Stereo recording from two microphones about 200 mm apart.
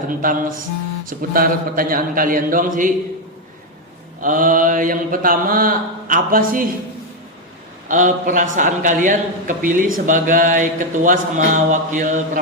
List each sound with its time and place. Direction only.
0.1 s mantra: 45° right (ahead or behind)
4.2 s mantra: 40° right (ahead or behind)
7.9 s a sound: 40° right (ahead or behind)